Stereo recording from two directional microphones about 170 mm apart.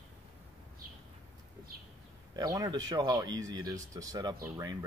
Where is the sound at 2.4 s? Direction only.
25° right (ahead or behind).